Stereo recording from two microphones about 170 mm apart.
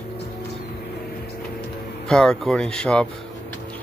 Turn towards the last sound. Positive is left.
turn(degrees=5)  # may be behind; listen again after turning